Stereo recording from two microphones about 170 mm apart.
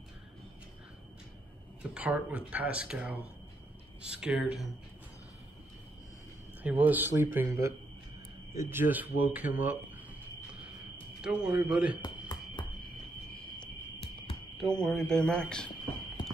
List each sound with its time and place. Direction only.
1.8 s speech: 10° right (ahead or behind)
6.6 s speech: 10° right (ahead or behind)
11.1 s speech: 5° right (ahead or behind)
12.0 s fire alarm: 25° left (ahead or behind)
14.6 s speech: 5° left (ahead or behind)